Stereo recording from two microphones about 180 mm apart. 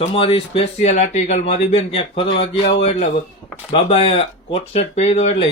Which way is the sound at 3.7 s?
35° left (ahead or behind).